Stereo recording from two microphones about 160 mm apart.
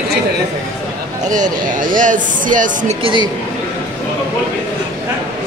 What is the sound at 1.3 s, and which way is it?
Speech, 55° right (ahead or behind).